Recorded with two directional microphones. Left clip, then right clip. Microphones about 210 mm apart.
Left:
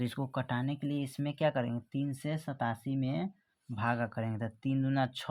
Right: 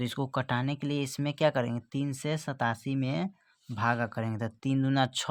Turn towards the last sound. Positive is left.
turn(degrees=-30)  # may be behind; listen again after turning